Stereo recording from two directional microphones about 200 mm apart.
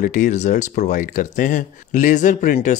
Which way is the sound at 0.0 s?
40° left (ahead or behind).